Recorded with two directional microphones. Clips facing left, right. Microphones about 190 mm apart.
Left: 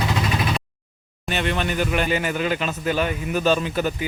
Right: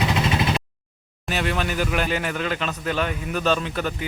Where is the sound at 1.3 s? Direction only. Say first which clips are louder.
Left 1 dB; 5° right (ahead or behind).